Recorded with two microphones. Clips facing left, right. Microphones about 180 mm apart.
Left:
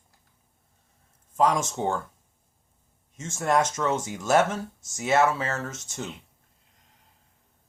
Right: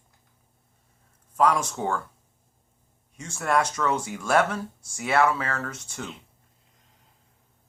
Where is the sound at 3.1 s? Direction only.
25° left (ahead or behind).